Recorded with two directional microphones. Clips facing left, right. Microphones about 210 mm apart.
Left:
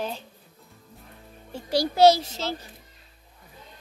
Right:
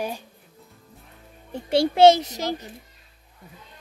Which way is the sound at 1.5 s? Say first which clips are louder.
Right 4 dB; 25° right (ahead or behind).